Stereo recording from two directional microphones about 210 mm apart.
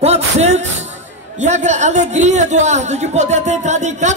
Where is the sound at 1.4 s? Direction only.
35° right (ahead or behind).